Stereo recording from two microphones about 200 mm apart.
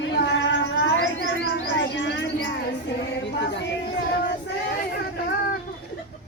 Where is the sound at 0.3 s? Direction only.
65° left (ahead or behind).